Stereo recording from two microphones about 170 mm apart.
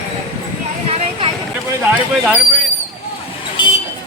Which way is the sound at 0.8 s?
35° right (ahead or behind).